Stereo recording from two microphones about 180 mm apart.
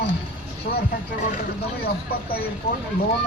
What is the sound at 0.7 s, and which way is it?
Speech, 60° left (ahead or behind).